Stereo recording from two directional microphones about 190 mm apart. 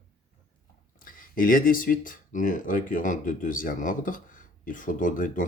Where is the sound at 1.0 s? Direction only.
45° left (ahead or behind).